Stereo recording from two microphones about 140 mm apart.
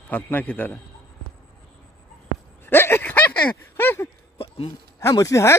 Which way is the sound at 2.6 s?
15° left (ahead or behind).